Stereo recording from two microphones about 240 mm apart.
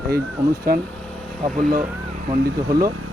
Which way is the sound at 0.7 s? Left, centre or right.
Right.